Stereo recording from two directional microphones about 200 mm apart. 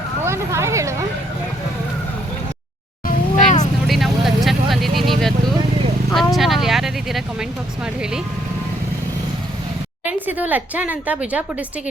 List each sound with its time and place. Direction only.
0.3 s speech: 15° right (ahead or behind)
3.3 s vehicle: 35° left (ahead or behind)
3.8 s vehicle: centre (ahead or behind)
10.1 s a woman's voice: 10° right (ahead or behind)